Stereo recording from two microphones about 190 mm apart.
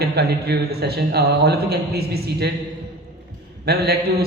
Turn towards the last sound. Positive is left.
turn(degrees=-55)  # may be behind; listen again after turning